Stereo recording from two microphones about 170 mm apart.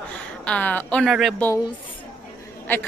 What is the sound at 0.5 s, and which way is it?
Speech, 10° left (ahead or behind).